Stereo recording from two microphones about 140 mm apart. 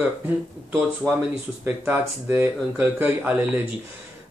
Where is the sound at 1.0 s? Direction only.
20° right (ahead or behind).